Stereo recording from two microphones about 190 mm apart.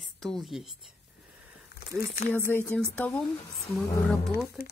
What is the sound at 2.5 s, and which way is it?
Speech, 5° left (ahead or behind).